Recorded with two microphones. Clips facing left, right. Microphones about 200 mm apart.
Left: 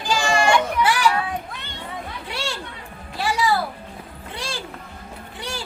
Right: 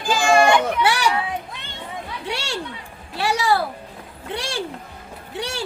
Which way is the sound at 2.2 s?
70° right (ahead or behind).